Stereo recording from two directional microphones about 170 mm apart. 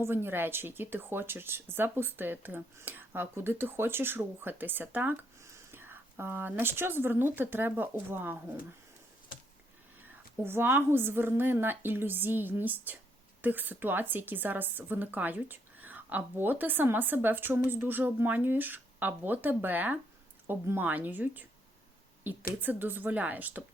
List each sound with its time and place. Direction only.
0.0 s speech: 15° right (ahead or behind)
10.4 s speech: 15° right (ahead or behind)
22.6 s speech: 10° right (ahead or behind)